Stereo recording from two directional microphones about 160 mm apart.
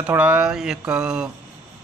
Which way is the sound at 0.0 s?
10° right (ahead or behind).